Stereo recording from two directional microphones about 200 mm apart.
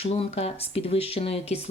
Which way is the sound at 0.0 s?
30° left (ahead or behind).